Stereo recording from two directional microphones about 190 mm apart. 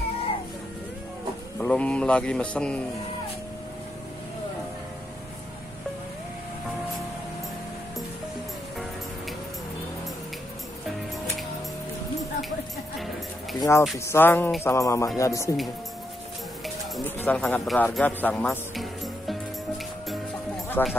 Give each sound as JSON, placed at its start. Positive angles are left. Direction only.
{"t": 1.6, "sound": "speech", "side_deg": 5}
{"t": 12.2, "sound": "music", "side_deg": 0}
{"t": 13.6, "sound": "speech", "side_deg": 15}
{"t": 17.2, "sound": "speech", "side_deg": 10}
{"t": 20.8, "sound": "speech", "side_deg": 10}